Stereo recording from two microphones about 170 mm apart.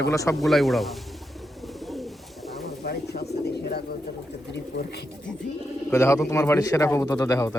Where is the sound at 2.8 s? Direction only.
70° left (ahead or behind).